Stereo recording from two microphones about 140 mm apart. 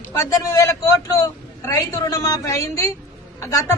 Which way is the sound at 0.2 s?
20° left (ahead or behind).